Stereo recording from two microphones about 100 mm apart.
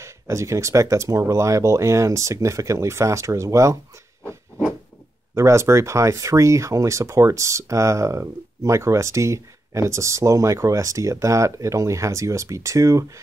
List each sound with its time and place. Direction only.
0.0 s speech: 30° right (ahead or behind)
5.3 s speech: 30° right (ahead or behind)